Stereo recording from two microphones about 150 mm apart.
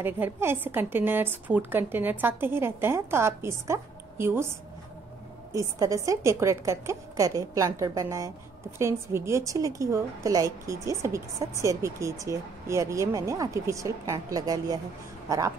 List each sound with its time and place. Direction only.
0.0 s a woman's voice: 15° right (ahead or behind)